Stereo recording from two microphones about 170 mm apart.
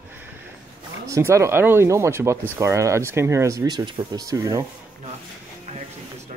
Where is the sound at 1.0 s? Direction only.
20° right (ahead or behind).